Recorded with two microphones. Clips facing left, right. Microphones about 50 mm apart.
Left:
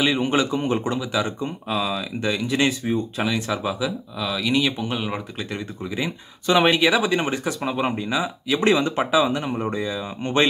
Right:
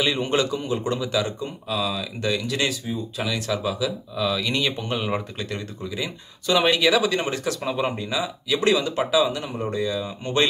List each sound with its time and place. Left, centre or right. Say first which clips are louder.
0.0 s a man's voice: left 2 dB; centre
0.6 s speech: left 4 dB; left
0.9 s a man's voice: even; centre
1.2 s speech: left 2 dB; left
4.2 s speech: left 1 dB; centre
5.5 s speech: left 1 dB; centre
6.8 s speech: left 1 dB; centre